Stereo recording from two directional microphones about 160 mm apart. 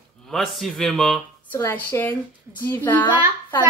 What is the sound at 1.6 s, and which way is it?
Speech, 15° left (ahead or behind).